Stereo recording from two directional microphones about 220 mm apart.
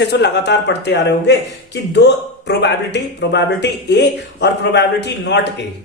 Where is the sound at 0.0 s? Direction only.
50° left (ahead or behind).